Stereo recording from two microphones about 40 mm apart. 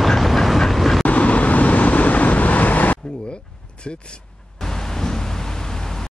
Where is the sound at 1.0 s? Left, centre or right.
Left.